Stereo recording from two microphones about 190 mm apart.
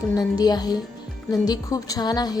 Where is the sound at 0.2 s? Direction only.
20° left (ahead or behind).